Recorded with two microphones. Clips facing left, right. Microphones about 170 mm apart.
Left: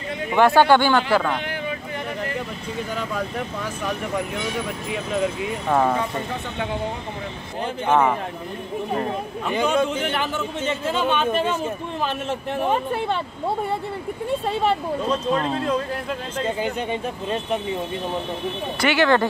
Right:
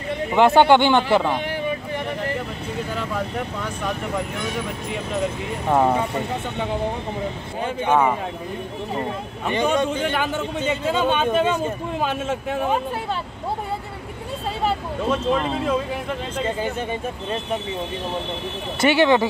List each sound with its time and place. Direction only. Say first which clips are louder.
0.3 s speech: right 1 dB; 20° right (ahead or behind)
5.7 s speech: right 2 dB; 10° right (ahead or behind)
7.8 s speech: even; 10° right (ahead or behind)
9.5 s speech: even; 5° left (ahead or behind)
15.0 s speech: right 2 dB; centre (ahead or behind)
18.8 s speech: right 3 dB; 25° right (ahead or behind)